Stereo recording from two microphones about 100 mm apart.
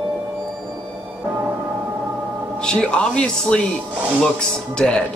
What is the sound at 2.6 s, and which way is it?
A woman's voice, 10° left (ahead or behind).